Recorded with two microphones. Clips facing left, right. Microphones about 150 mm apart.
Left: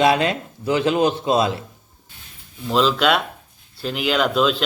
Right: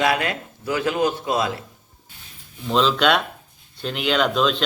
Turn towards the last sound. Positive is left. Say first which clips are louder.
# left 1 dB
turn(degrees=5)  # may be behind; listen again after turning